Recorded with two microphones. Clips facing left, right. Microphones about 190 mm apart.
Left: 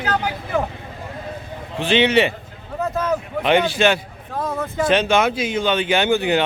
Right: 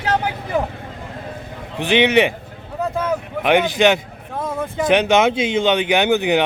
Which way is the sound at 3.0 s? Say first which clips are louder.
Left 1 dB; 10° right (ahead or behind).